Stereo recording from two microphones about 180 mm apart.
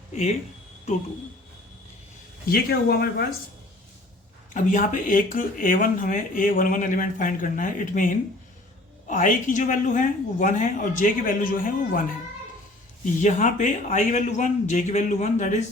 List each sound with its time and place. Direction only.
2.5 s speech: 60° left (ahead or behind)
4.5 s speech: 45° left (ahead or behind)
13.2 s speech: 45° left (ahead or behind)